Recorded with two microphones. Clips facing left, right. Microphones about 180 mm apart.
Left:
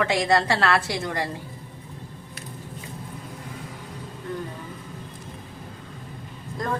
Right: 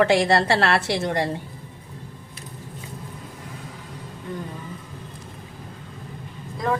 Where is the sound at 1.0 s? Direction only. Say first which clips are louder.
Right 4 dB; 25° right (ahead or behind).